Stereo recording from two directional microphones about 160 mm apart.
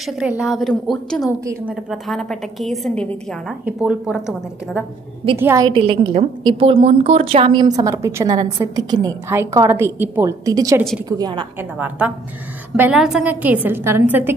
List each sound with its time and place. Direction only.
0.0 s a woman's voice: 5° right (ahead or behind)
1.4 s a woman's voice: 15° right (ahead or behind)
1.9 s a woman's voice: centre (ahead or behind)
3.6 s a woman's voice: 10° right (ahead or behind)
5.4 s a woman's voice: 15° right (ahead or behind)
5.8 s a woman's voice: 35° right (ahead or behind)
12.7 s a woman's voice: 10° right (ahead or behind)